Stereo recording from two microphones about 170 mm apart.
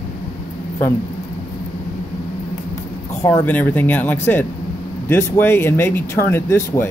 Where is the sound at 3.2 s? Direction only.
10° left (ahead or behind).